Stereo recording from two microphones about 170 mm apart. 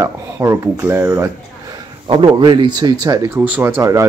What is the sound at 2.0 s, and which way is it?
Speech, 30° right (ahead or behind).